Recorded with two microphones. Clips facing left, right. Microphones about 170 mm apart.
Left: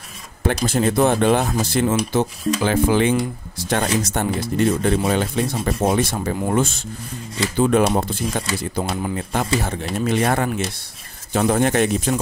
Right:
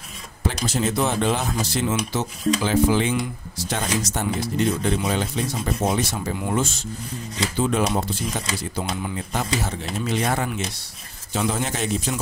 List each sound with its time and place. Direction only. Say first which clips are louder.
0.7 s a man's voice: left 6 dB; 55° left (ahead or behind)